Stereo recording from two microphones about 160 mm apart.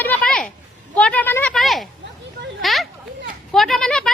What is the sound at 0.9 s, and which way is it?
Speech, 10° left (ahead or behind).